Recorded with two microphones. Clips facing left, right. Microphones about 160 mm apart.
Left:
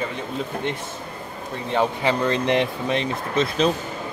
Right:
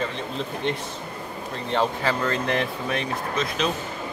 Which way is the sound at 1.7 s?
15° left (ahead or behind).